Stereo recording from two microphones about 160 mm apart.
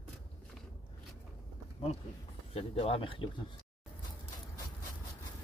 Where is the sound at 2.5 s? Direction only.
40° left (ahead or behind).